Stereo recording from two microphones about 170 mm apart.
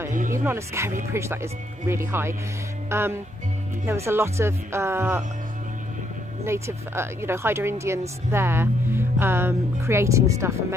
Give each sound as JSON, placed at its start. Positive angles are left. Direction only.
{"t": 0.3, "sound": "speech", "side_deg": -15}
{"t": 2.9, "sound": "music", "side_deg": -15}
{"t": 3.8, "sound": "speech", "side_deg": -15}
{"t": 6.4, "sound": "speech", "side_deg": -15}